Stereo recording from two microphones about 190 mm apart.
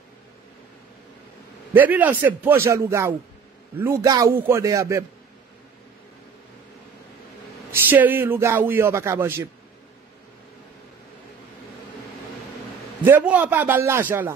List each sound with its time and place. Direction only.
1.7 s speech: 10° right (ahead or behind)
7.7 s speech: 10° right (ahead or behind)
13.0 s speech: 10° right (ahead or behind)